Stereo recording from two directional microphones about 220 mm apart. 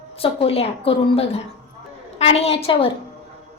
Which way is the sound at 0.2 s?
25° left (ahead or behind).